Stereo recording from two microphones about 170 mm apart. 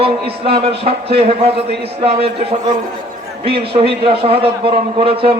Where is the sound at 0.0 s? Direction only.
35° right (ahead or behind).